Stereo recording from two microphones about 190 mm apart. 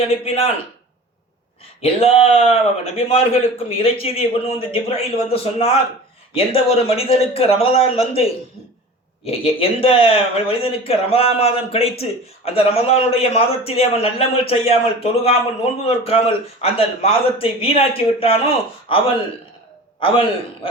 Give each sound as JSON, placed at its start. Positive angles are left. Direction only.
{"t": 0.0, "sound": "a man's voice", "side_deg": 30}
{"t": 1.8, "sound": "a man's voice", "side_deg": 30}